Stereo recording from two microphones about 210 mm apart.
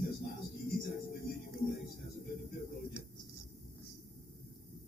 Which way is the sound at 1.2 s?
45° left (ahead or behind).